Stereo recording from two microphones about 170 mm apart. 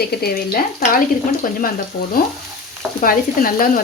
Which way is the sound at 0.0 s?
65° left (ahead or behind).